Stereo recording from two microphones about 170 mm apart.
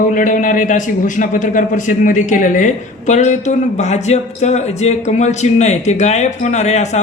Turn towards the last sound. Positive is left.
turn(degrees=40)  # may be behind; listen again after turning